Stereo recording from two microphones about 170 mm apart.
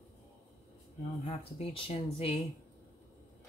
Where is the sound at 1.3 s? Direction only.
35° left (ahead or behind).